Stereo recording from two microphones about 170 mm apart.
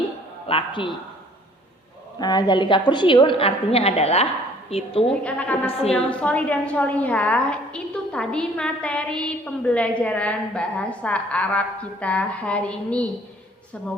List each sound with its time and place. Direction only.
0.4 s a woman's voice: 30° left (ahead or behind)
2.1 s a woman's voice: 25° left (ahead or behind)
5.2 s a woman's voice: 10° left (ahead or behind)